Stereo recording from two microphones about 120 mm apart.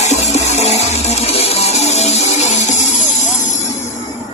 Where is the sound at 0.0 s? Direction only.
70° left (ahead or behind).